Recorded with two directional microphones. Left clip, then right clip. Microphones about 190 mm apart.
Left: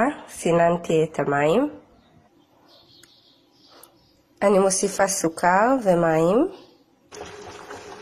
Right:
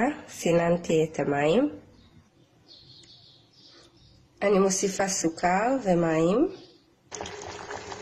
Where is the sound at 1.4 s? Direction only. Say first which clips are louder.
Left 3 dB; 10° left (ahead or behind).